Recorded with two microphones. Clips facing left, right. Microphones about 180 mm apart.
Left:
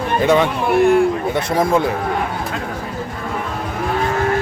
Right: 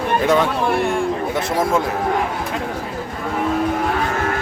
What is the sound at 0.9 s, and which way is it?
Speech, centre (ahead or behind).